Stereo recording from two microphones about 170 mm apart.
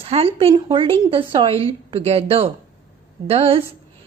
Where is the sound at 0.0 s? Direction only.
35° right (ahead or behind).